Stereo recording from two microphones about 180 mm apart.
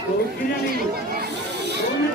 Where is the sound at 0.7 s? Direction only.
60° right (ahead or behind).